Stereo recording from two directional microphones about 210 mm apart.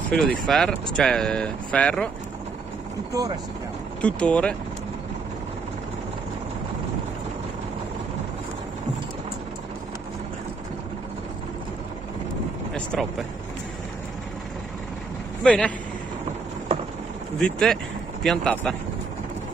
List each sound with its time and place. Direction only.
0.1 s speech: centre (ahead or behind)
3.1 s speech: 15° right (ahead or behind)
4.0 s speech: 5° left (ahead or behind)
15.4 s speech: 5° left (ahead or behind)
17.4 s speech: 5° left (ahead or behind)